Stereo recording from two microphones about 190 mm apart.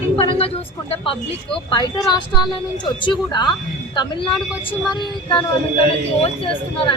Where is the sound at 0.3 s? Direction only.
30° left (ahead or behind).